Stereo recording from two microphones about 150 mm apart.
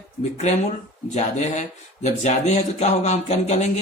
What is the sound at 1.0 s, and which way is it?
Speech, 50° left (ahead or behind).